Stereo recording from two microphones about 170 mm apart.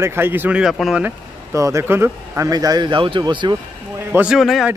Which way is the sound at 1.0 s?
15° right (ahead or behind).